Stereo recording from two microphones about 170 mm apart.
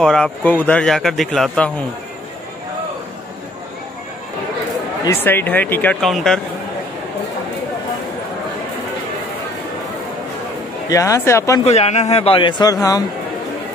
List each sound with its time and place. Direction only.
0.0 s a man's voice: 5° left (ahead or behind)
5.0 s speech: 10° left (ahead or behind)
10.9 s speech: 20° left (ahead or behind)
11.6 s a man's voice: 40° left (ahead or behind)